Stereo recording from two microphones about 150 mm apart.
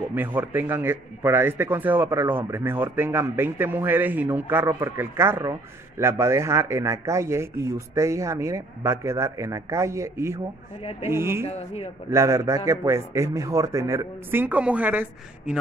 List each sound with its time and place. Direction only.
0.1 s a man's voice: 10° right (ahead or behind)
11.4 s speech: 40° left (ahead or behind)
12.1 s a man's voice: 20° right (ahead or behind)